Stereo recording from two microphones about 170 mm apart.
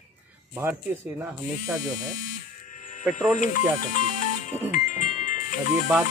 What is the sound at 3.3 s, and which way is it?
Speech, 50° left (ahead or behind).